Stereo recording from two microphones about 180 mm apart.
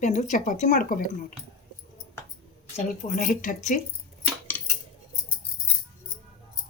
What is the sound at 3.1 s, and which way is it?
Speech, 50° left (ahead or behind).